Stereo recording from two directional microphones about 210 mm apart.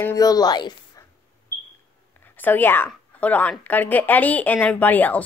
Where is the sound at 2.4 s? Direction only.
10° left (ahead or behind).